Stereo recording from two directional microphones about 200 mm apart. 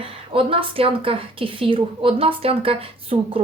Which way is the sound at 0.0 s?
25° right (ahead or behind).